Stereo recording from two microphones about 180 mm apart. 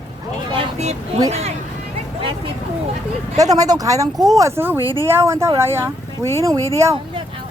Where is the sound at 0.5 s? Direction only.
40° right (ahead or behind).